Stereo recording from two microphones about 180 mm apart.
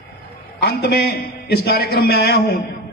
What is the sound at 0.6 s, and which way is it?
A man's voice, 60° left (ahead or behind).